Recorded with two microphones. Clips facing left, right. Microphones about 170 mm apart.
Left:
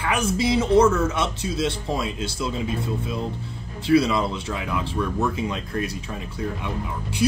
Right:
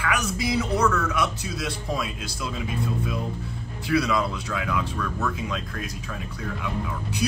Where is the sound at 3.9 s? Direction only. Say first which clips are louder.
Left 4 dB; 25° left (ahead or behind).